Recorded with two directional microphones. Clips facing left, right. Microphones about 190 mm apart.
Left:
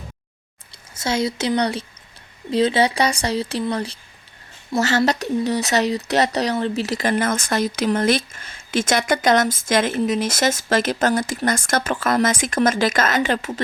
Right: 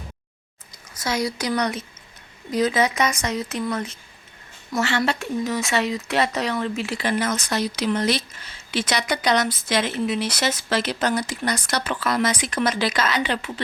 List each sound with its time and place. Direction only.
0.7 s a woman's voice: 25° left (ahead or behind); by 13.6 s 45° left (ahead or behind)